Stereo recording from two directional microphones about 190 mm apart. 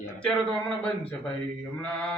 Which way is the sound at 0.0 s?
5° left (ahead or behind).